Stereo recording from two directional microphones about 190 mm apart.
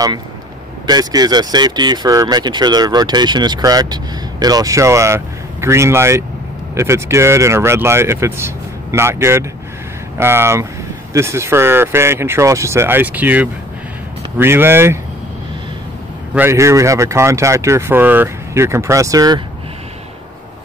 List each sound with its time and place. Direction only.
0.8 s speech: 20° right (ahead or behind)
16.3 s speech: 15° right (ahead or behind)